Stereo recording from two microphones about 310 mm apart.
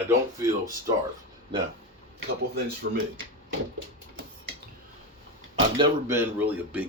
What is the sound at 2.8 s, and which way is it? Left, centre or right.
Speech, right.